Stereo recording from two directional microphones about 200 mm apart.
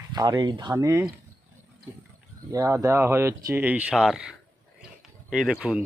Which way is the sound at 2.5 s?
15° right (ahead or behind).